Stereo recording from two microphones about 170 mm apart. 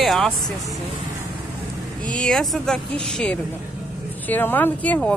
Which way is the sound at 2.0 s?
5° left (ahead or behind).